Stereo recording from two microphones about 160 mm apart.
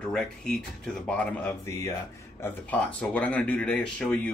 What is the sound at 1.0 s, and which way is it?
Speech, 5° left (ahead or behind).